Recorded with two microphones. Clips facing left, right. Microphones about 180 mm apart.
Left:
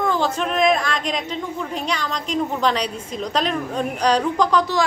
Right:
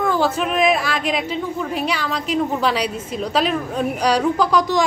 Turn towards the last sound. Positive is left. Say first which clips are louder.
# right 1 dB
turn(degrees=-10)  # may be behind; listen again after turning